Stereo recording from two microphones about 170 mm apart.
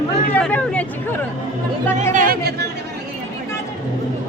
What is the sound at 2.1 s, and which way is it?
Speech, 55° right (ahead or behind).